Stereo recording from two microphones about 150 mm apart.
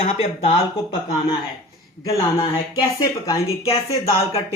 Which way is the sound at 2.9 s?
25° left (ahead or behind).